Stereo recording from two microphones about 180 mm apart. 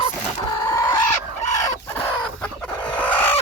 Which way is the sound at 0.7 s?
20° left (ahead or behind).